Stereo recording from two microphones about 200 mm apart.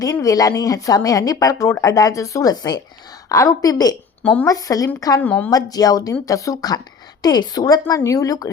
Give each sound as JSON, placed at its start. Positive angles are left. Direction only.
{"t": 0.0, "sound": "speech", "side_deg": 15}
{"t": 4.2, "sound": "a woman's voice", "side_deg": 5}
{"t": 4.4, "sound": "speech", "side_deg": 15}
{"t": 5.2, "sound": "speech", "side_deg": 5}
{"t": 5.5, "sound": "a woman's voice", "side_deg": 20}